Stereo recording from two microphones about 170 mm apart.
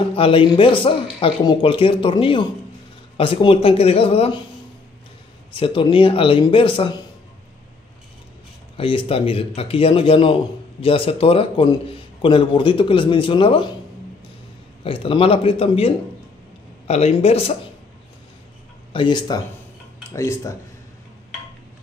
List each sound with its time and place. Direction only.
0.1 s a man's voice: 30° left (ahead or behind)
5.5 s a man's voice: 30° left (ahead or behind)
8.7 s a man's voice: 35° left (ahead or behind)
14.8 s a man's voice: 30° left (ahead or behind)
18.9 s speech: 25° left (ahead or behind)